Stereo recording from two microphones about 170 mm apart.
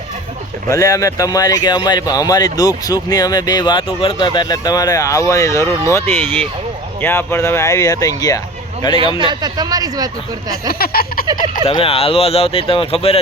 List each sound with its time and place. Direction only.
0.7 s speech: 20° left (ahead or behind)
9.1 s speech: 25° right (ahead or behind)
10.5 s a sound: 60° left (ahead or behind)
11.6 s speech: 35° left (ahead or behind)